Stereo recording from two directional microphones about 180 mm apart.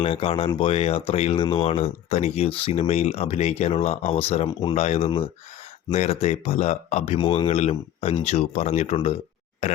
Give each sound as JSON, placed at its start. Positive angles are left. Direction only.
{"t": 0.0, "sound": "speech", "side_deg": 30}